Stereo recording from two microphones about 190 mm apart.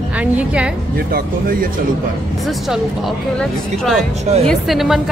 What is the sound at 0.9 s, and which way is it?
Speech, 50° right (ahead or behind).